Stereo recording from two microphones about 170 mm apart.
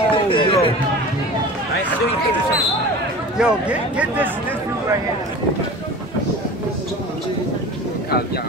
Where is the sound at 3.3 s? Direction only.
5° right (ahead or behind).